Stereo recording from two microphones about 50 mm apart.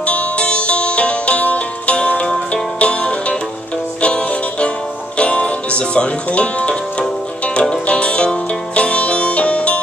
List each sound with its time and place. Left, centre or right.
0.0 s music: left